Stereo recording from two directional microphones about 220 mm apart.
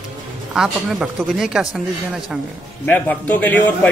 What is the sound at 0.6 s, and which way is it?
Speech, centre (ahead or behind).